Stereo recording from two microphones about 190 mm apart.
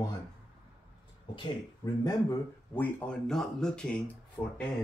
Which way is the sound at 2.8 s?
5° left (ahead or behind).